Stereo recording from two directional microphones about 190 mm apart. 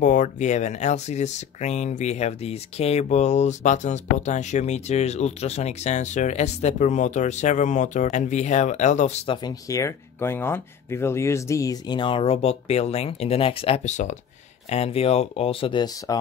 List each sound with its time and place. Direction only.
0.0 s speech: 40° left (ahead or behind); by 16.2 s 25° left (ahead or behind)